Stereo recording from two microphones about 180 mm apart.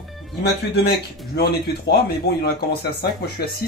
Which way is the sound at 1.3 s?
60° left (ahead or behind).